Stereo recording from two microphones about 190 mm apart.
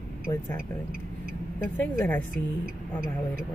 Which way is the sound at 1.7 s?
10° left (ahead or behind).